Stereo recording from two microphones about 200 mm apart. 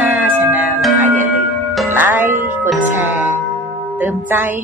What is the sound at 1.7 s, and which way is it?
Music, 10° right (ahead or behind).